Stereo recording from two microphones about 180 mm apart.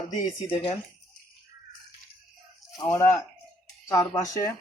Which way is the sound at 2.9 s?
10° left (ahead or behind).